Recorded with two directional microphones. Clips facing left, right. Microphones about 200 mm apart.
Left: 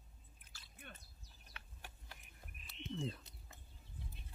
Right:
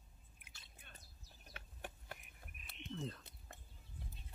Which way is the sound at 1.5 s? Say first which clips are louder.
Right 7 dB; 55° right (ahead or behind).